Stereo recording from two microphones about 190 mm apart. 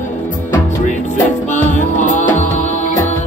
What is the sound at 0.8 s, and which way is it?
Music, 40° left (ahead or behind).